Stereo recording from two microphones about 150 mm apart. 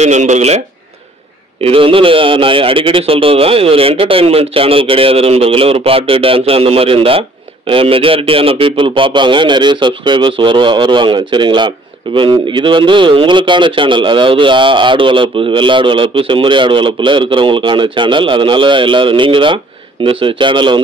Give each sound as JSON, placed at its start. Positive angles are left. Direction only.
{"t": 0.0, "sound": "speech", "side_deg": -50}
{"t": 1.6, "sound": "a man's voice", "side_deg": -35}